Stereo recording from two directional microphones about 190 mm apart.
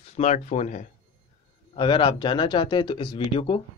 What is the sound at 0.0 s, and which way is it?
Speech, 35° left (ahead or behind).